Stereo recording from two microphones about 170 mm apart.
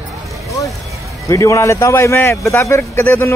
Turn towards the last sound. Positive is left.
turn(degrees=15)  # may be behind; listen again after turning